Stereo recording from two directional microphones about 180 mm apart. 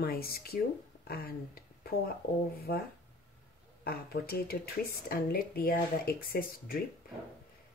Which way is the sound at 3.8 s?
55° left (ahead or behind).